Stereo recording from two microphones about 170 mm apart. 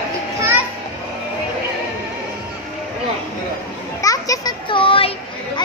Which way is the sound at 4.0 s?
20° left (ahead or behind).